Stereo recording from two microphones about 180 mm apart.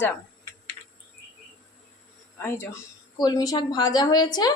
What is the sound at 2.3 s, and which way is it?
A woman's voice, 10° left (ahead or behind).